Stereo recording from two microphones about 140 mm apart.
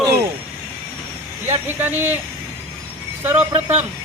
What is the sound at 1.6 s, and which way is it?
Speech, 15° right (ahead or behind).